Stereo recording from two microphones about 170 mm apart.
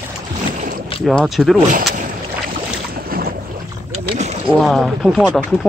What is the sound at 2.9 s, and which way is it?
Boat, 60° right (ahead or behind).